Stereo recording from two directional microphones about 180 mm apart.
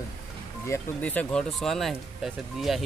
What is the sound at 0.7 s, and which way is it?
Speech, 10° left (ahead or behind).